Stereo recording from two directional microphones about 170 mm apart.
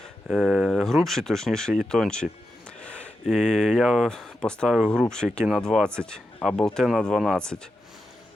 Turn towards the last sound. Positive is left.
turn(degrees=0)  # may be behind; listen again after turning